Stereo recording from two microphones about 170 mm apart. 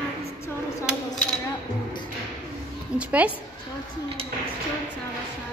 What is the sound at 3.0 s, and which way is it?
Speech, 10° right (ahead or behind).